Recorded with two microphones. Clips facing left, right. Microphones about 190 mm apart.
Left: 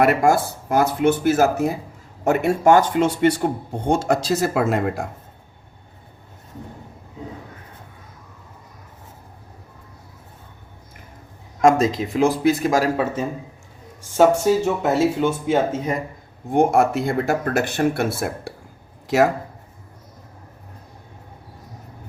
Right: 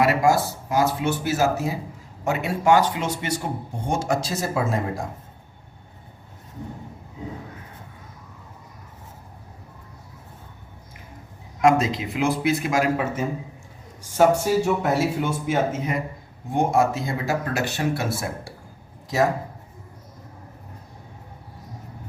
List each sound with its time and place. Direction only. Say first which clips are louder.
0.0 s speech: left 3 dB; 55° left (ahead or behind)
11.6 s speech: left 3 dB; 45° left (ahead or behind)
14.2 s speech: left 3 dB; 20° left (ahead or behind)
16.5 s speech: left 4 dB; 55° left (ahead or behind)